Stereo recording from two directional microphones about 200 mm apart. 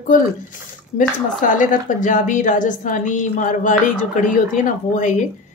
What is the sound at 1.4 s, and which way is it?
A woman's voice, 40° left (ahead or behind).